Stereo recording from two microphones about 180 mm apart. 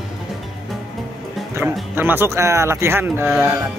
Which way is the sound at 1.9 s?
10° right (ahead or behind).